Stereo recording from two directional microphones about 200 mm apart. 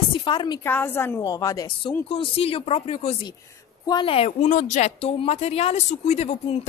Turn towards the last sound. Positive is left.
turn(degrees=35)  # may be behind; listen again after turning